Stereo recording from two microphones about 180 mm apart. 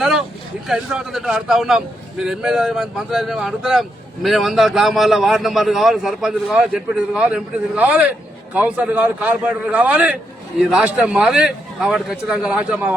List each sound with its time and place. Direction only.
0.0 s a man's voice: centre (ahead or behind)